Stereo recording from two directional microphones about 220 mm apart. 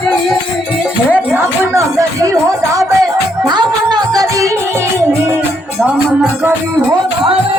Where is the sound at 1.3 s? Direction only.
10° right (ahead or behind).